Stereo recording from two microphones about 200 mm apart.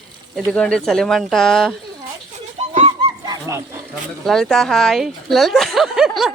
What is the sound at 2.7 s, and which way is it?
Goose, 25° right (ahead or behind).